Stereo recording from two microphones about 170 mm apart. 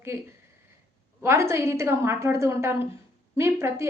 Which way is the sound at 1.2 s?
15° right (ahead or behind).